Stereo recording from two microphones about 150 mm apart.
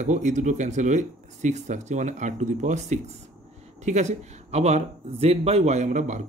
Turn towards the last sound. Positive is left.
turn(degrees=-55)  # may be behind; listen again after turning